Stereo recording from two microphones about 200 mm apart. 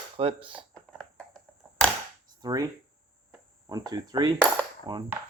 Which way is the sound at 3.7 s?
20° right (ahead or behind).